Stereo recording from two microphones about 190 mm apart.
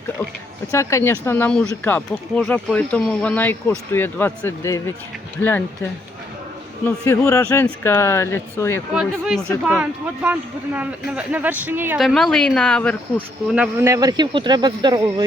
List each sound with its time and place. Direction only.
0.7 s speech: 15° left (ahead or behind)
6.8 s speech: 15° left (ahead or behind)
8.9 s speech: 5° right (ahead or behind)
11.9 s speech: centre (ahead or behind)
13.5 s speech: 5° right (ahead or behind)
13.9 s speech: 20° right (ahead or behind)